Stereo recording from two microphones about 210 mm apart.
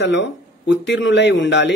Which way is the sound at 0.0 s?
60° left (ahead or behind).